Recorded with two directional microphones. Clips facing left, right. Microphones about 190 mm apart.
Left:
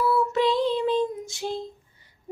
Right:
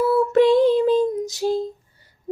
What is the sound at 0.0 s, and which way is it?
Female singing, 50° right (ahead or behind).